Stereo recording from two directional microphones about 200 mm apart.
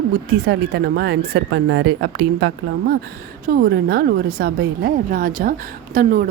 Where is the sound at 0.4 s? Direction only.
55° right (ahead or behind).